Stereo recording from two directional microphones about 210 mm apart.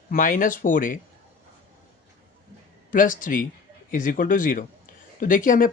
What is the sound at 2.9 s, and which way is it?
Speech, 40° left (ahead or behind).